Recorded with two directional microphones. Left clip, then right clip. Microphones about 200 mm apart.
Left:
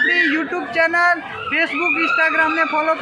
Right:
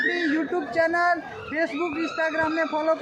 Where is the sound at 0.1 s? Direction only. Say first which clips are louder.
Left 8 dB; 20° left (ahead or behind).